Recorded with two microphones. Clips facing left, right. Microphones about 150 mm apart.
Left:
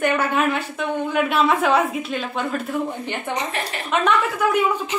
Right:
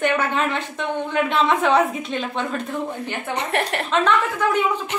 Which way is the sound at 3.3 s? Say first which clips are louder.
Right 5 dB; 60° right (ahead or behind).